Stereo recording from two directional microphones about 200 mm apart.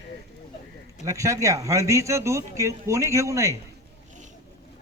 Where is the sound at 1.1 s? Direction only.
15° right (ahead or behind).